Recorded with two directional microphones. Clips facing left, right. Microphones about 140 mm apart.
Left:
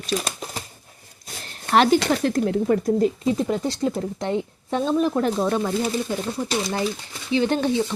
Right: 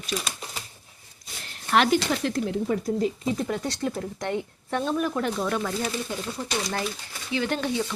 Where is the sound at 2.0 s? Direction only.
45° left (ahead or behind).